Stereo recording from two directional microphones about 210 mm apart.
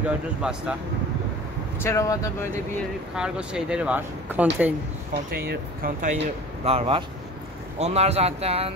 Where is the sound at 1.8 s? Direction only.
15° left (ahead or behind).